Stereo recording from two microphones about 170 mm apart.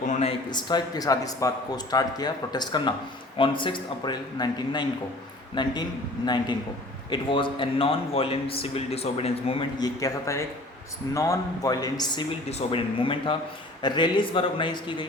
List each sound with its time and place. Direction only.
0.0 s a sound: 40° left (ahead or behind)
0.5 s a man's voice: 25° left (ahead or behind)
12.5 s a man's voice: 35° left (ahead or behind)